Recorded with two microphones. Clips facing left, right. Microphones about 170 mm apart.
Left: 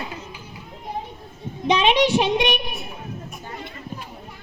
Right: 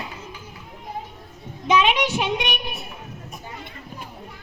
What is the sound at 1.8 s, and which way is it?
Speech, 25° left (ahead or behind).